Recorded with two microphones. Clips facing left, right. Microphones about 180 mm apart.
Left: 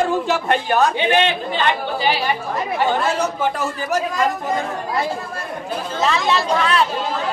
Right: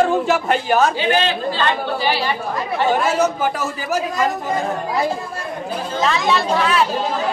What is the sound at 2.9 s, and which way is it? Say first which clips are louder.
A man's voice: right 3 dB; 5° right (ahead or behind).